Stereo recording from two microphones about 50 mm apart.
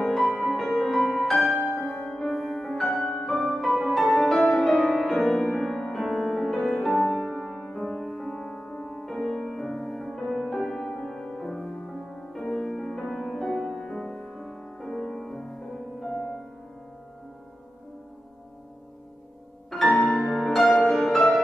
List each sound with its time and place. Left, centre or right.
0.0 s music: centre
19.9 s music: left
20.2 s harp: centre